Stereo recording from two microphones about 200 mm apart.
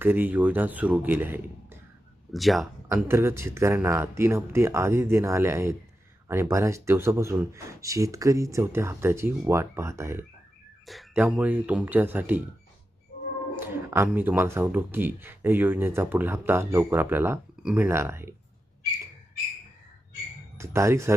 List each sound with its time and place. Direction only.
0.0 s speech: 10° right (ahead or behind)
2.3 s speech: centre (ahead or behind)
2.9 s speech: 10° right (ahead or behind)
13.6 s speech: 10° right (ahead or behind)
20.6 s speech: 15° right (ahead or behind)